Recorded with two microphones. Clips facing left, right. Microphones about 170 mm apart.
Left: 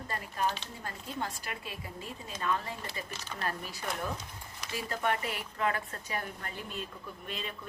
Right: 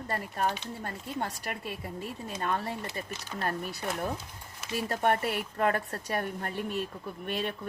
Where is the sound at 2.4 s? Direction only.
45° right (ahead or behind).